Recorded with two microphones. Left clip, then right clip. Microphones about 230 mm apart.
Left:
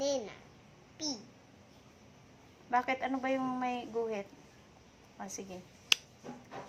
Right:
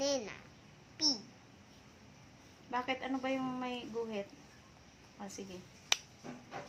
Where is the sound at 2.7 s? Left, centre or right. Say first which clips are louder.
Left 5 dB; centre.